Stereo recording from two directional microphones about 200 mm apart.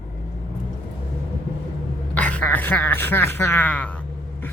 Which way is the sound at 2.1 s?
5° left (ahead or behind).